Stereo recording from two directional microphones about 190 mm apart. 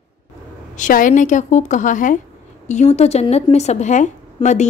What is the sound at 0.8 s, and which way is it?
A woman's voice, 45° left (ahead or behind).